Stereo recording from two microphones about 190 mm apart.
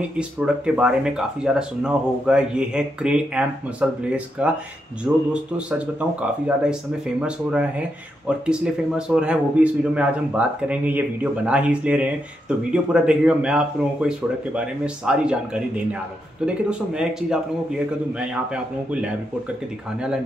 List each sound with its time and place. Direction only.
0.2 s speech: 5° right (ahead or behind)